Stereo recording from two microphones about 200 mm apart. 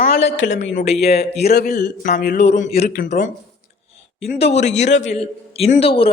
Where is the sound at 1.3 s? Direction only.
50° left (ahead or behind).